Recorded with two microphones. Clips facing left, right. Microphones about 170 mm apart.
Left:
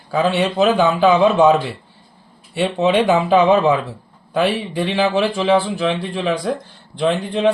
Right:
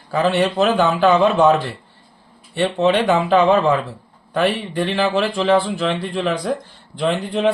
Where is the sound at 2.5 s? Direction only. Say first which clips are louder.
Left 1 dB; 10° left (ahead or behind).